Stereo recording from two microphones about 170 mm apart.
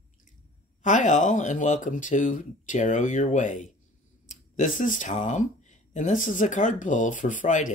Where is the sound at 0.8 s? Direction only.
45° left (ahead or behind).